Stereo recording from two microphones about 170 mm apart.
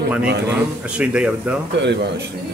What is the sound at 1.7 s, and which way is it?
Speech, 90° right.